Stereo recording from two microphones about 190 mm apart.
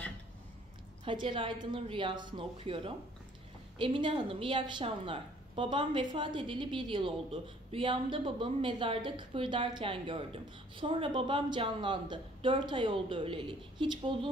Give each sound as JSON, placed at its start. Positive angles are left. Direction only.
{"t": 1.0, "sound": "a woman's voice", "side_deg": -25}